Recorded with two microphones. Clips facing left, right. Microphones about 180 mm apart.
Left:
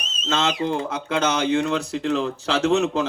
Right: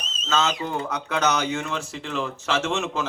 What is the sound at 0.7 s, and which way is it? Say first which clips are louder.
Speech: left 3 dB; 25° left (ahead or behind).